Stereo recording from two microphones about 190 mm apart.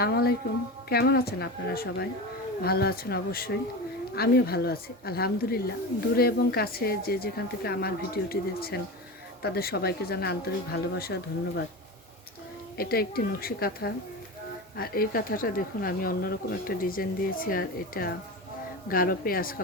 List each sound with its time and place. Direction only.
0.0 s a woman's voice: 55° left (ahead or behind)
12.7 s speech: 55° left (ahead or behind)